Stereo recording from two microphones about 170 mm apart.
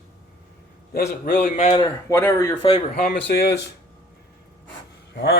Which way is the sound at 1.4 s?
40° left (ahead or behind).